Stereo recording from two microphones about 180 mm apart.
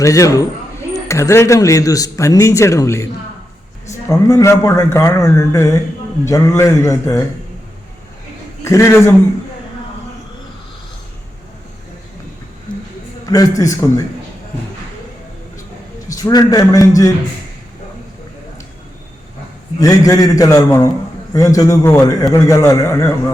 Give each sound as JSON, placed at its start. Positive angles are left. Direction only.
{"t": 0.0, "sound": "a man's voice", "side_deg": 20}
{"t": 8.6, "sound": "a man's voice", "side_deg": 15}
{"t": 12.7, "sound": "a sound", "side_deg": 5}
{"t": 13.2, "sound": "a man's voice", "side_deg": 20}
{"t": 16.1, "sound": "a man's voice", "side_deg": 20}
{"t": 19.8, "sound": "a man's voice", "side_deg": 20}